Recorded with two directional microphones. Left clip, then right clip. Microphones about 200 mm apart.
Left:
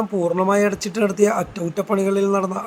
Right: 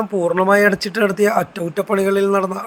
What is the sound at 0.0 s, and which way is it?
Speech, 20° right (ahead or behind).